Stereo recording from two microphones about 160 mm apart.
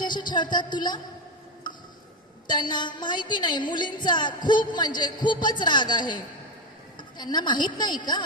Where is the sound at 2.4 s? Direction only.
25° left (ahead or behind).